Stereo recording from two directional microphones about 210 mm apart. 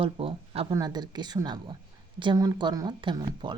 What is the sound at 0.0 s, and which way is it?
Speech, 25° right (ahead or behind).